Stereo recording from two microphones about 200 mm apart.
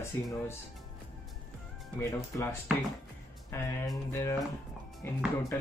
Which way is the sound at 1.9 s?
15° left (ahead or behind).